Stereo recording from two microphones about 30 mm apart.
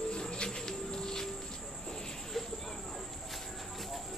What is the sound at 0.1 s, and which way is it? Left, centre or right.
Cricket, left.